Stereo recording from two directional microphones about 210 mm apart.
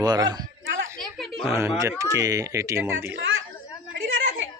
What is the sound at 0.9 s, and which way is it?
Music, centre (ahead or behind).